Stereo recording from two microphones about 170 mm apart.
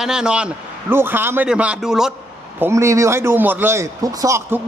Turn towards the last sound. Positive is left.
turn(degrees=-20)  # may be behind; listen again after turning